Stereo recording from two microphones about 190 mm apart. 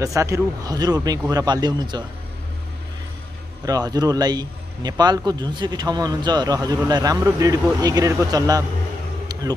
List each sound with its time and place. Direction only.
0.0 s a man's voice: 15° right (ahead or behind)
3.6 s a man's voice: 20° right (ahead or behind)
9.3 s vehicle: 20° right (ahead or behind)